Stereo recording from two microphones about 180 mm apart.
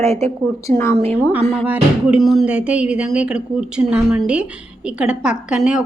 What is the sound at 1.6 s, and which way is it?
A woman's voice, 5° right (ahead or behind).